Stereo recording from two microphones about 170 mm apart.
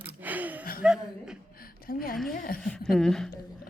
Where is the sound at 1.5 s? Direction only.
60° left (ahead or behind).